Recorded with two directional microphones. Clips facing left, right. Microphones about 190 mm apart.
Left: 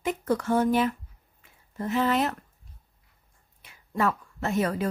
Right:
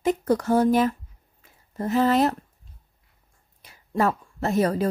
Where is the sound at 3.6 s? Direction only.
35° right (ahead or behind).